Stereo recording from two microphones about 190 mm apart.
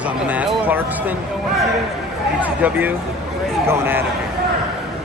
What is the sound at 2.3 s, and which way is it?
Speech, 10° right (ahead or behind).